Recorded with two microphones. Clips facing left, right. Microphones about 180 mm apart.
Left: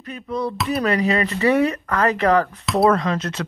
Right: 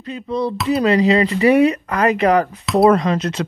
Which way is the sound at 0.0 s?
30° right (ahead or behind).